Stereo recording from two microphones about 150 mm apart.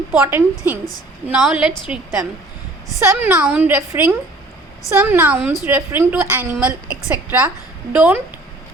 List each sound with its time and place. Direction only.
0.1 s a woman's voice: 10° right (ahead or behind)
3.0 s a woman's voice: 20° right (ahead or behind)